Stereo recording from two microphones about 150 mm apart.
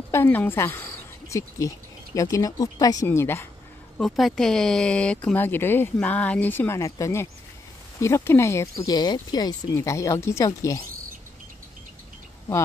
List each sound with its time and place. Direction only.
0.1 s a woman's voice: 15° left (ahead or behind)
4.0 s speech: centre (ahead or behind); by 10.8 s 20° left (ahead or behind)